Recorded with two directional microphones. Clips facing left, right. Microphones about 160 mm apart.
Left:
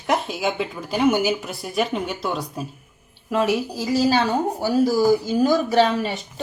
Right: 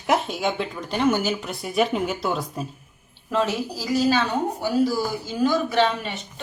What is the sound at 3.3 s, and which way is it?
A woman's voice, 10° left (ahead or behind).